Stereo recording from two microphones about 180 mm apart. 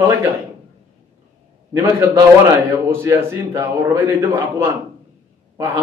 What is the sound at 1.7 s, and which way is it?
A man's voice, 15° right (ahead or behind).